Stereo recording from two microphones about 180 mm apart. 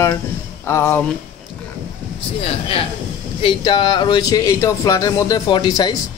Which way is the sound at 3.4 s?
25° left (ahead or behind).